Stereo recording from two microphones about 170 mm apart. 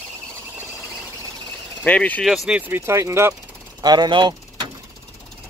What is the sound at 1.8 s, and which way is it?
Speech, 10° left (ahead or behind).